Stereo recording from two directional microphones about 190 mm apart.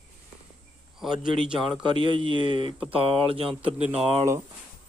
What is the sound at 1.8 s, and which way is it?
Speech, 25° right (ahead or behind).